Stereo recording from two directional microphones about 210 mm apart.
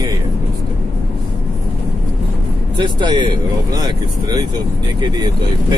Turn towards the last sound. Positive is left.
turn(degrees=-20)  # may be behind; listen again after turning